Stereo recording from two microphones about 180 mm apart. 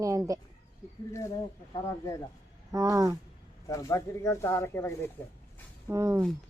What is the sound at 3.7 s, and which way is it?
Speech, 15° left (ahead or behind).